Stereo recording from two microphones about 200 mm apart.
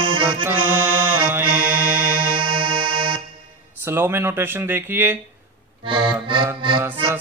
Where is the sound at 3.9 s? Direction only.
10° right (ahead or behind).